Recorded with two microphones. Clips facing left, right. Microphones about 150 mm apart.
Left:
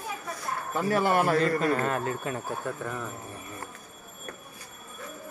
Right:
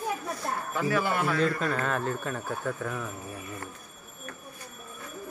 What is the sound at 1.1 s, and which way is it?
Speech, 45° left (ahead or behind).